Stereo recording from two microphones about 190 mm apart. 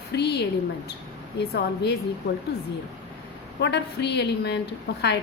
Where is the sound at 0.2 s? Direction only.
60° left (ahead or behind).